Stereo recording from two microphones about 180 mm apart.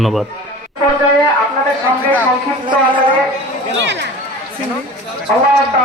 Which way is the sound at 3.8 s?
80° right.